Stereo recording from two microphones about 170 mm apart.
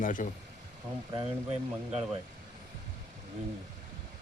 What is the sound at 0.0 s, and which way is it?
Speech, 50° left (ahead or behind).